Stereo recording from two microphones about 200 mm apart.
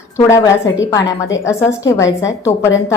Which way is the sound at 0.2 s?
15° left (ahead or behind).